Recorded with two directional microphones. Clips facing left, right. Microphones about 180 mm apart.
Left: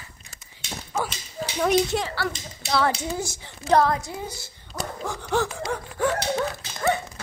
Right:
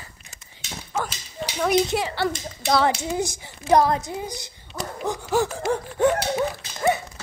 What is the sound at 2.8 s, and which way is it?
A woman's voice, 15° right (ahead or behind).